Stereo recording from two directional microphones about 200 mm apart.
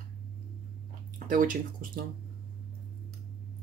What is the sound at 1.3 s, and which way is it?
Speech, 45° right (ahead or behind).